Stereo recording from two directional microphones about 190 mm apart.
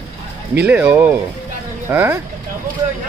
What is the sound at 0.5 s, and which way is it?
Speech, 10° right (ahead or behind).